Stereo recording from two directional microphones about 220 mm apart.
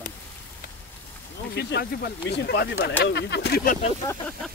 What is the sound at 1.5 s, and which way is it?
Speech, 45° left (ahead or behind).